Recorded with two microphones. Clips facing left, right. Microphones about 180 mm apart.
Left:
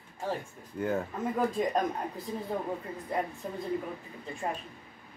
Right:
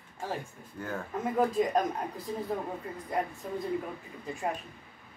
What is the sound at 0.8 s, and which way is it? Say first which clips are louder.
Speech: left 7 dB; 20° left (ahead or behind).